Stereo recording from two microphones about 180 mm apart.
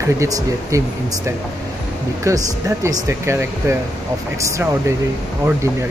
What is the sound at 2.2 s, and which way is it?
Speech, 20° right (ahead or behind).